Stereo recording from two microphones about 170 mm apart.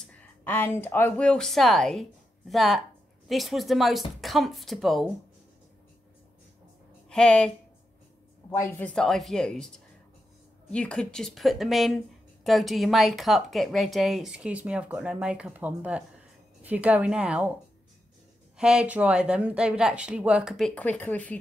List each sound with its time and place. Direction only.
0.0 s a woman's voice: 10° left (ahead or behind)
7.1 s a woman's voice: 5° left (ahead or behind)
10.7 s a woman's voice: 5° left (ahead or behind)
18.6 s a woman's voice: 5° right (ahead or behind)